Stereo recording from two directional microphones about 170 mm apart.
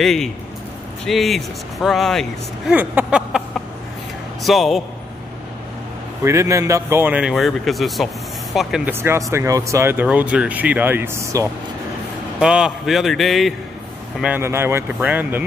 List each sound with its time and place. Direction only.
0.0 s speech: centre (ahead or behind)
2.7 s speech: 10° right (ahead or behind)
6.2 s speech: 15° right (ahead or behind)
8.9 s speech: 15° right (ahead or behind)
14.2 s speech: 10° right (ahead or behind)